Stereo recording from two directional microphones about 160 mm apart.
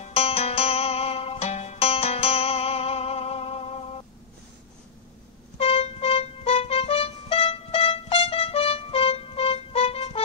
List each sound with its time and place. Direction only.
0.0 s music: 40° left (ahead or behind)
5.6 s music: 35° left (ahead or behind)